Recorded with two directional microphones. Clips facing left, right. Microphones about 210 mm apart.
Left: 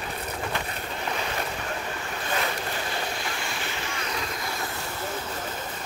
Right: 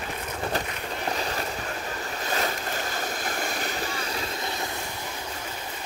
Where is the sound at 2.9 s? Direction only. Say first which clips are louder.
Right 1 dB; 45° right (ahead or behind).